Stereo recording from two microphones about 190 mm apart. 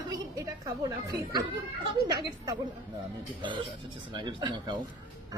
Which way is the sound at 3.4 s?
25° right (ahead or behind).